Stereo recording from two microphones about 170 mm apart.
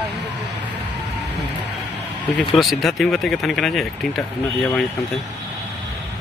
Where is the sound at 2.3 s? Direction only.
Centre (ahead or behind).